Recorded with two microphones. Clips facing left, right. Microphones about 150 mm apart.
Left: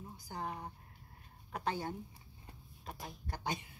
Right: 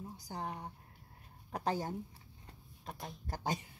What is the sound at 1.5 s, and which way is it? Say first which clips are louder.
Speech: right 2 dB; 40° right (ahead or behind).